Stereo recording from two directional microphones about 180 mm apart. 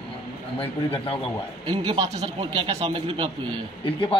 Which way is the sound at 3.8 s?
30° left (ahead or behind).